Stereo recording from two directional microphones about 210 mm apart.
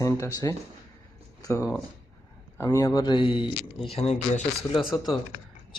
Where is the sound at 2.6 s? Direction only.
15° left (ahead or behind); by 4.8 s 30° left (ahead or behind).